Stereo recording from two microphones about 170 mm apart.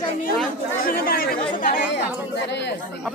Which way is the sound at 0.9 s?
60° left (ahead or behind).